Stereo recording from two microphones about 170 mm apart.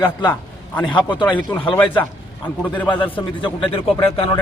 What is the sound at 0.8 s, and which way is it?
Speech, 10° left (ahead or behind).